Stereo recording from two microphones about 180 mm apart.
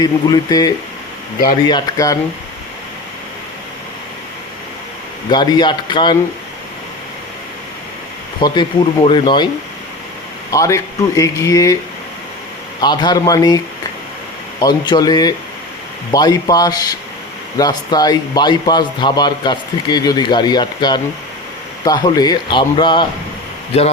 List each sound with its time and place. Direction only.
0.0 s speech: 20° left (ahead or behind)
5.3 s speech: 25° left (ahead or behind)
8.4 s speech: 25° left (ahead or behind)
10.5 s speech: 15° left (ahead or behind)
12.8 s speech: 25° left (ahead or behind)
14.6 s speech: 25° left (ahead or behind)